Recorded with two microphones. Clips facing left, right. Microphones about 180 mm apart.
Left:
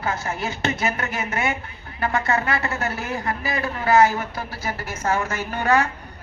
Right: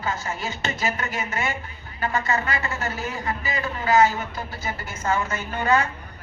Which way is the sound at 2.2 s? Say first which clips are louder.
Left 3 dB; 60° left (ahead or behind).